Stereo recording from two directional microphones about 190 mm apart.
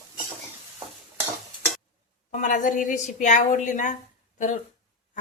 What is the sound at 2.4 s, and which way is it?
A woman's voice, 45° left (ahead or behind).